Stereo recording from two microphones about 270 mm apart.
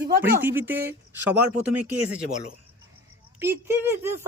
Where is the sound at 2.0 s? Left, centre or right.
Right.